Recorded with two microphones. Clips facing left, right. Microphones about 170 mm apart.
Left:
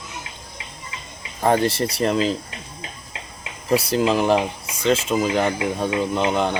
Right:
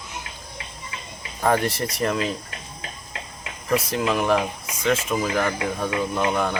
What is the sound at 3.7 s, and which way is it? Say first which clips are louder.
Speech: left 4 dB; 30° left (ahead or behind).